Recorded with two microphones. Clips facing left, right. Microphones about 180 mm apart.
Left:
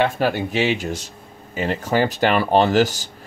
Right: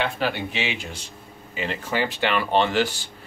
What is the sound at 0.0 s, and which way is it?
Speech, 45° left (ahead or behind).